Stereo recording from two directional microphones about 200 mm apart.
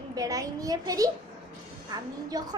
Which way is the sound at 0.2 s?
15° right (ahead or behind).